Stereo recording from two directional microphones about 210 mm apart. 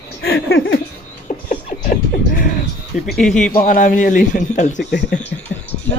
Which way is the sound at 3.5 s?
40° left (ahead or behind).